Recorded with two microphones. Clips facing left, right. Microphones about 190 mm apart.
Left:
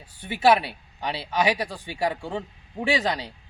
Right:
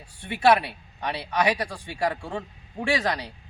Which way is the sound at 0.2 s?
Centre (ahead or behind).